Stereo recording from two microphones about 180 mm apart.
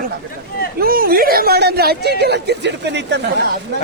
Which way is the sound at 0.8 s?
55° right (ahead or behind).